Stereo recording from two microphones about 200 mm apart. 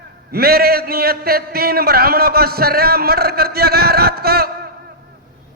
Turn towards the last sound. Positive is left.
turn(degrees=-50)  # may be behind; listen again after turning